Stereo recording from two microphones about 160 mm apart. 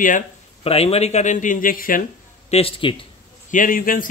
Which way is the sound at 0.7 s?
40° left (ahead or behind).